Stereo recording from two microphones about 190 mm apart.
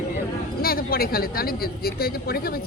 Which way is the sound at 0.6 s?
50° left (ahead or behind).